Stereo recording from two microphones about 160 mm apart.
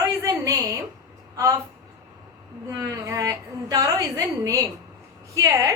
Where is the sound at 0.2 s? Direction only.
20° right (ahead or behind).